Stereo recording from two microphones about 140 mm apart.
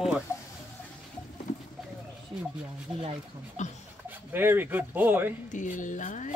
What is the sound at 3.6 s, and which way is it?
Speech, 60° left (ahead or behind).